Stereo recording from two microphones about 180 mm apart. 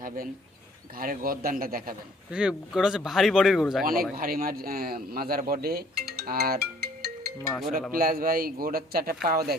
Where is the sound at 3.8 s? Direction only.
55° right (ahead or behind).